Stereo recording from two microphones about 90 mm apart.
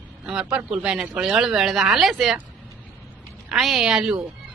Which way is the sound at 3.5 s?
5° right (ahead or behind).